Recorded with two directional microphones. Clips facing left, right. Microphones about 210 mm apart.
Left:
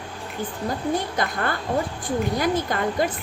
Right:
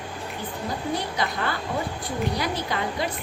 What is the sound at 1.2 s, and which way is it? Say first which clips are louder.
Speech: left 2 dB; 45° left (ahead or behind).